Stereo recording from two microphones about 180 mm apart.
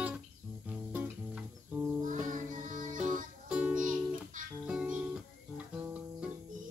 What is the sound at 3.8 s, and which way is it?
Music, 45° right (ahead or behind).